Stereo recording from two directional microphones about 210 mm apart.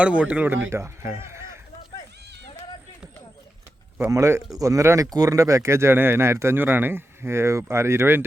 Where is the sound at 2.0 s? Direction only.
55° right (ahead or behind).